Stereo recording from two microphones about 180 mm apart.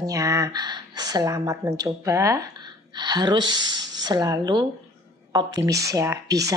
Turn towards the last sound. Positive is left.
turn(degrees=-20)  # may be behind; listen again after turning